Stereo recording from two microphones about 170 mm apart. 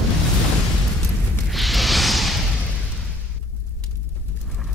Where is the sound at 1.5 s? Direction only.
Centre (ahead or behind).